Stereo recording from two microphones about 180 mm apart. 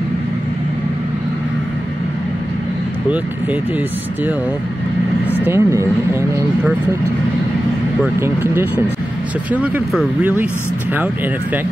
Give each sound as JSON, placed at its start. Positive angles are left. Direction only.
{"t": 5.3, "sound": "speech", "side_deg": -10}
{"t": 8.2, "sound": "speech", "side_deg": -10}